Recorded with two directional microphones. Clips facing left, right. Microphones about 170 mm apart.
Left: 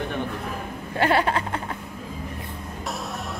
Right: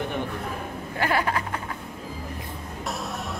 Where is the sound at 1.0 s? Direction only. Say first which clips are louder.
Left 4 dB; 30° left (ahead or behind).